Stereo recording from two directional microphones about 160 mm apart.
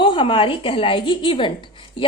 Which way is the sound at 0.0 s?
30° left (ahead or behind).